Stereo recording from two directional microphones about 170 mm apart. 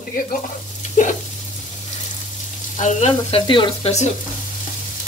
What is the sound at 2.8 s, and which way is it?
Frying, 45° left (ahead or behind).